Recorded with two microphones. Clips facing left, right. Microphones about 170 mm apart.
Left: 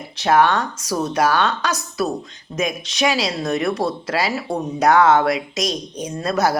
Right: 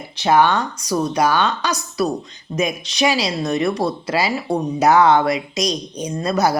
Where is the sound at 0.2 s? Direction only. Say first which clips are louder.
Right 1 dB; centre (ahead or behind).